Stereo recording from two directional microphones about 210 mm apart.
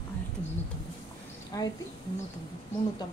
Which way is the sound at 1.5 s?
15° left (ahead or behind).